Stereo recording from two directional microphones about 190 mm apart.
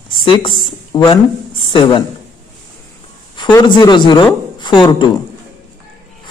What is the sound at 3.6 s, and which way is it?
Speech, 25° left (ahead or behind).